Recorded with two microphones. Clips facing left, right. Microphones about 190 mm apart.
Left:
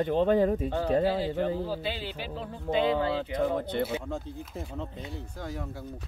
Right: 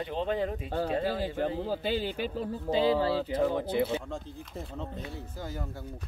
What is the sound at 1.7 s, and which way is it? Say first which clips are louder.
Speech: right 3 dB; 45° right (ahead or behind).